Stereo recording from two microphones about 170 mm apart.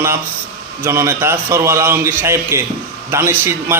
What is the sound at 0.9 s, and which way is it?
Speech, 15° right (ahead or behind).